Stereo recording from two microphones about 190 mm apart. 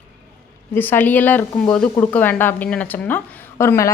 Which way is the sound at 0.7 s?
10° left (ahead or behind).